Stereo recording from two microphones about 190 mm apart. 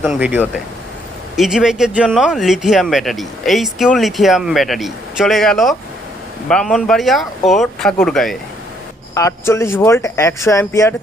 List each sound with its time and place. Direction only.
0.0 s speech: 5° right (ahead or behind)
9.1 s speech: 15° left (ahead or behind)